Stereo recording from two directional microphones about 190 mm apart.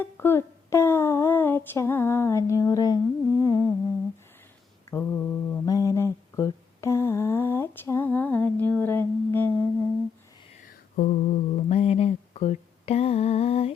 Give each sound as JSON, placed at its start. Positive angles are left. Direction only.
{"t": 0.0, "sound": "a sound", "side_deg": 10}
{"t": 4.9, "sound": "mantra", "side_deg": 10}
{"t": 10.6, "sound": "mantra", "side_deg": 45}